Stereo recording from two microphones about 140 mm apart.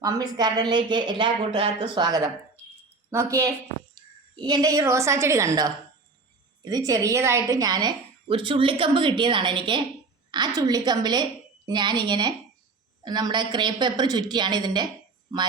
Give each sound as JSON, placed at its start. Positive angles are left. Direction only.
{"t": 0.0, "sound": "a woman's voice", "side_deg": -30}